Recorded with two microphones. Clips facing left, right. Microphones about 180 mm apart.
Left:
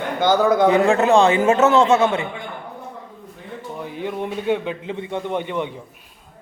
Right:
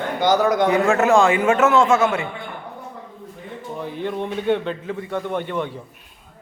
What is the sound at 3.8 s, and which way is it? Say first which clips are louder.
A man's voice: right 1 dB; 10° left (ahead or behind).